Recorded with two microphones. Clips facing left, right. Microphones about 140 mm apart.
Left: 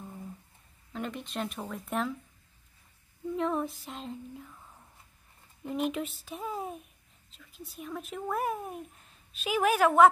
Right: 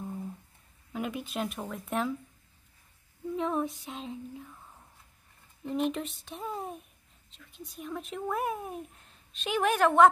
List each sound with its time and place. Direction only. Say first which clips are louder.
0.9 s speech: right 2 dB; 10° right (ahead or behind)
3.3 s speech: even; centre (ahead or behind)
5.6 s a child's voice: right 1 dB; 5° left (ahead or behind)